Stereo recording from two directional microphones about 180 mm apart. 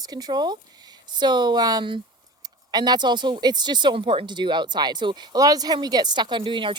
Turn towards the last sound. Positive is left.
turn(degrees=-25)  # may be behind; listen again after turning